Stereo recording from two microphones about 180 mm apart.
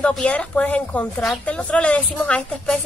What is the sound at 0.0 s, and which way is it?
A woman's voice, 5° left (ahead or behind).